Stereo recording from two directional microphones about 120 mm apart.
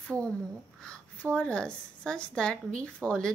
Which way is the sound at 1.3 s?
10° left (ahead or behind).